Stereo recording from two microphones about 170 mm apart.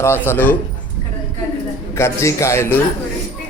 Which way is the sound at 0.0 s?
15° left (ahead or behind).